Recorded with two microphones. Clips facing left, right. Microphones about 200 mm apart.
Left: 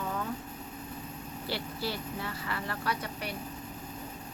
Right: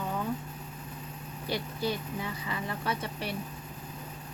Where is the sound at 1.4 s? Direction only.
20° right (ahead or behind).